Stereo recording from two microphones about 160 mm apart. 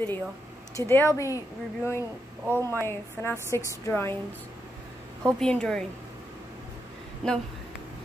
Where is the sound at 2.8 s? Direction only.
15° left (ahead or behind).